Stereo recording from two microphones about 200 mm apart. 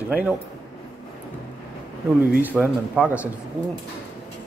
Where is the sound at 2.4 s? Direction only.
10° right (ahead or behind).